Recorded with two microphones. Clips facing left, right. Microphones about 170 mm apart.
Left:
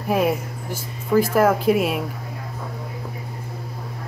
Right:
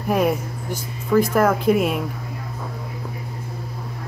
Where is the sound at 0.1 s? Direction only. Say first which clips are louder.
Right 1 dB; 5° left (ahead or behind).